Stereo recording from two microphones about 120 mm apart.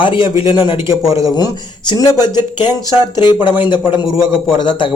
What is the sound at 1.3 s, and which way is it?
Speech, 35° left (ahead or behind).